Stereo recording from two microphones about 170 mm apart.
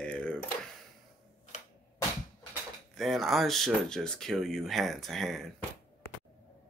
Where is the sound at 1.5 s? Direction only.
45° left (ahead or behind).